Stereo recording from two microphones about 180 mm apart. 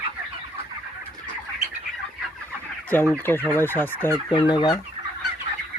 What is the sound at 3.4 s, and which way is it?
Fowl, 10° left (ahead or behind).